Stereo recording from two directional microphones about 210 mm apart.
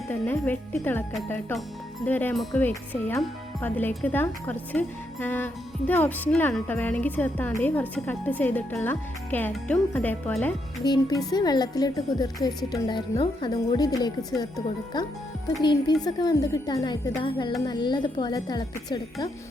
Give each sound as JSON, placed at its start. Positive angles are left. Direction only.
{"t": 0.1, "sound": "speech", "side_deg": 10}
{"t": 10.8, "sound": "a woman's voice", "side_deg": 20}